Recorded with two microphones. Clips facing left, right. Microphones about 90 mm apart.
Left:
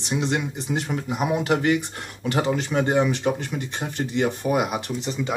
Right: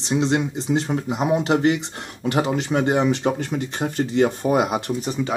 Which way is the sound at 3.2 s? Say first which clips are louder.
Right 2 dB; 35° right (ahead or behind).